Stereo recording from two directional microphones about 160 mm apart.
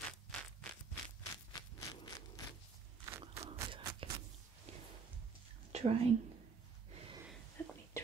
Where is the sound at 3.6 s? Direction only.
25° right (ahead or behind).